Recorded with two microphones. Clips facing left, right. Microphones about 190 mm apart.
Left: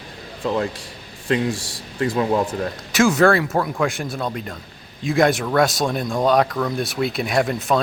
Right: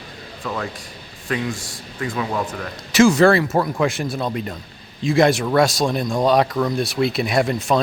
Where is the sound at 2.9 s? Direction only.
Centre (ahead or behind).